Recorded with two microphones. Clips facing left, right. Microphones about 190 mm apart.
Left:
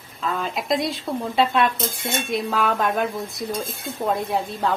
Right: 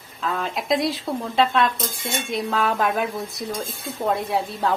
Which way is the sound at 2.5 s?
Centre (ahead or behind).